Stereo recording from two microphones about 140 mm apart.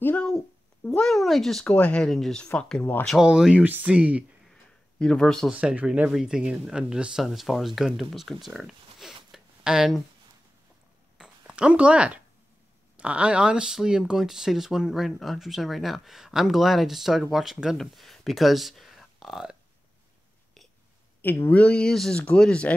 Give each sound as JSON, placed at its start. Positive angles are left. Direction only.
{"t": 0.0, "sound": "speech", "side_deg": 10}
{"t": 3.2, "sound": "speech", "side_deg": -5}
{"t": 4.5, "sound": "a sound", "side_deg": 5}
{"t": 5.5, "sound": "speech", "side_deg": -10}
{"t": 11.1, "sound": "a sound", "side_deg": -5}
{"t": 12.9, "sound": "speech", "side_deg": -10}
{"t": 21.2, "sound": "speech", "side_deg": 15}